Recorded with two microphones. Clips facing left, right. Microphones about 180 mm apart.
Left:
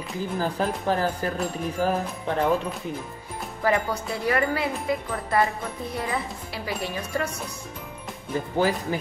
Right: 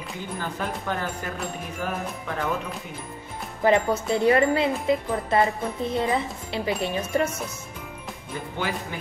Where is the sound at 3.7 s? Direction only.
25° right (ahead or behind).